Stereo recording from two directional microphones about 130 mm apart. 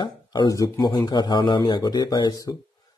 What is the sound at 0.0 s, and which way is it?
Speech, 35° left (ahead or behind).